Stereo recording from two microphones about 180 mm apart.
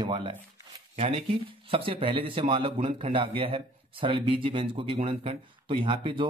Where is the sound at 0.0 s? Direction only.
30° right (ahead or behind).